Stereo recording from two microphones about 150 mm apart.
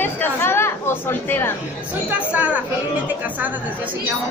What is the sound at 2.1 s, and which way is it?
Speech, 10° right (ahead or behind).